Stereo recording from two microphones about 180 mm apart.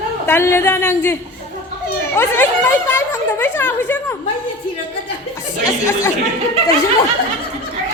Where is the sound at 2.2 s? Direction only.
10° left (ahead or behind).